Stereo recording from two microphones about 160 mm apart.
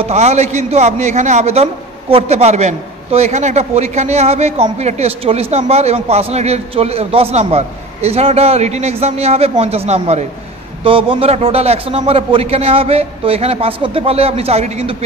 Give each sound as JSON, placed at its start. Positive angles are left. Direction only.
{"t": 0.0, "sound": "a man's voice", "side_deg": -45}